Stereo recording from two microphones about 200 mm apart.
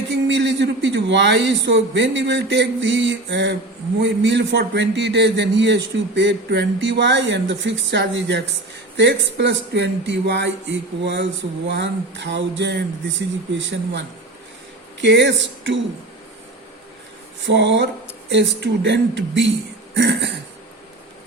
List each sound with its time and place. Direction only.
0.1 s a man's voice: 65° right (ahead or behind)
15.0 s a man's voice: 60° right (ahead or behind)
17.4 s a man's voice: 60° right (ahead or behind)
19.9 s throat clearing: 65° right (ahead or behind)